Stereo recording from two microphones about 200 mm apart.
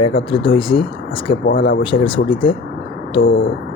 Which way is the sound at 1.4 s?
55° left (ahead or behind).